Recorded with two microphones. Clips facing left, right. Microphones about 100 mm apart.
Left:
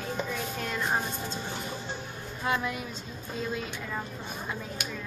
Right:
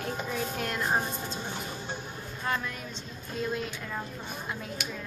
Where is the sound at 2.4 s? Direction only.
10° left (ahead or behind).